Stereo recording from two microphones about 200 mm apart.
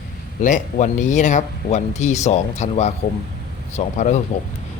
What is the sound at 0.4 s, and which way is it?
Speech, 40° left (ahead or behind).